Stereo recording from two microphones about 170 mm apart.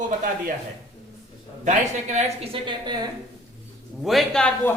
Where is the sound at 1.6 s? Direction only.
45° right (ahead or behind); by 3.1 s 25° right (ahead or behind).